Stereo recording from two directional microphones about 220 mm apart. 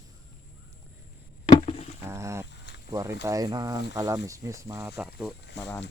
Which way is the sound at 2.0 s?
10° right (ahead or behind).